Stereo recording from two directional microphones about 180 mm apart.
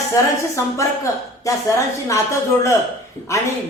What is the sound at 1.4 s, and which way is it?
Speech, 20° left (ahead or behind).